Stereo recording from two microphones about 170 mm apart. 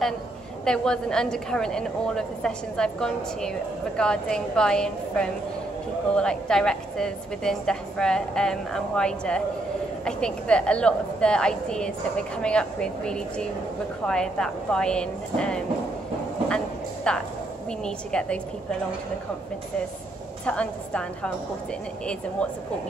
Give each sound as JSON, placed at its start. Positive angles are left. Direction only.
{"t": 0.7, "sound": "a woman's voice", "side_deg": 5}
{"t": 16.4, "sound": "a sound", "side_deg": 5}
{"t": 17.6, "sound": "a woman's voice", "side_deg": 5}
{"t": 20.4, "sound": "a woman's voice", "side_deg": 5}